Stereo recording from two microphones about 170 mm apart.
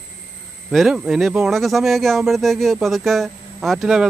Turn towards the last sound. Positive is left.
turn(degrees=-5)  # may be behind; listen again after turning